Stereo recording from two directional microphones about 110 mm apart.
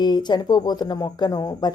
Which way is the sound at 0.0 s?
40° left (ahead or behind).